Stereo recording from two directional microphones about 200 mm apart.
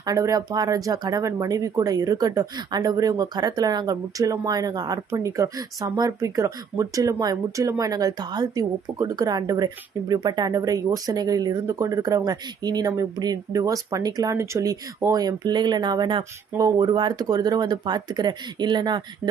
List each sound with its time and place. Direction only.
0.0 s speech: 15° right (ahead or behind)